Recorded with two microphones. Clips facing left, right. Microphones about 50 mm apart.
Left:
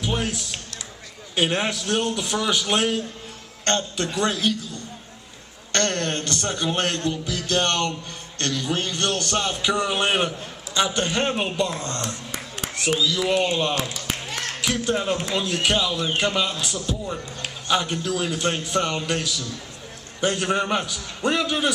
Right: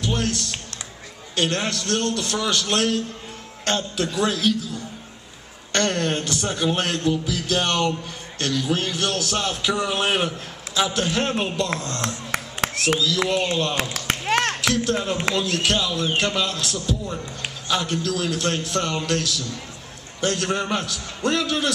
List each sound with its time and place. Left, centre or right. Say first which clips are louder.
0.0 s a man's voice: right 1 dB; centre
5.7 s a man's voice: right 2 dB; centre
12.3 s a sound: right 6 dB; right
13.3 s a man's voice: left 1 dB; centre
13.9 s a sound: right 8 dB; right
14.7 s a man's voice: right 1 dB; centre